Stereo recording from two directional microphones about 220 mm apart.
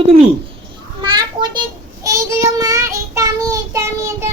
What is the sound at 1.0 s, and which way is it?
Children playing, 20° right (ahead or behind).